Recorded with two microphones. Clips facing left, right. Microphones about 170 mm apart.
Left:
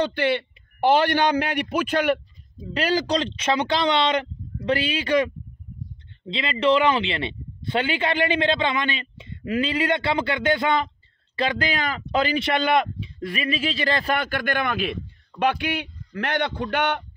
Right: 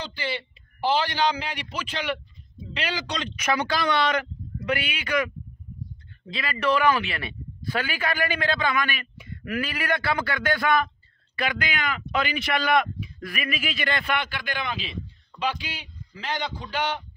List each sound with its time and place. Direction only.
0.0 s speech: 60° left (ahead or behind)